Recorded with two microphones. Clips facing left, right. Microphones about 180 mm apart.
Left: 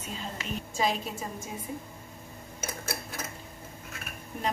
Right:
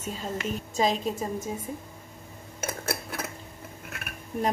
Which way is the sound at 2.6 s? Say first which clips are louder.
Right 5 dB; 60° right (ahead or behind).